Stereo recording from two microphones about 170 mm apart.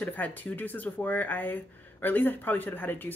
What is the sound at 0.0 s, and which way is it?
Speech, 10° left (ahead or behind).